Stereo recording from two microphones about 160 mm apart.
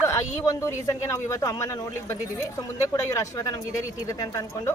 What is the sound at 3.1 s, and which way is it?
Speech, 20° left (ahead or behind).